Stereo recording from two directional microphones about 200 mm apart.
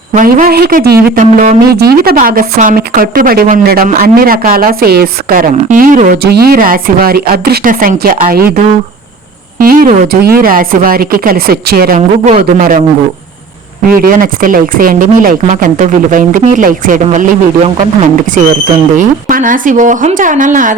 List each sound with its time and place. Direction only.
0.1 s speech: 40° right (ahead or behind)
9.6 s speech: 45° right (ahead or behind)
11.9 s speech: 35° right (ahead or behind)
13.8 s speech: 45° right (ahead or behind)
18.3 s speech: 40° right (ahead or behind)